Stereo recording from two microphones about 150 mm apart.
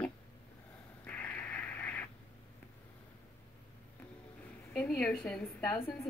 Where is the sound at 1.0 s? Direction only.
10° left (ahead or behind).